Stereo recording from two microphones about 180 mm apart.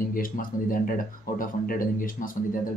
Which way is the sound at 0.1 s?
50° left (ahead or behind).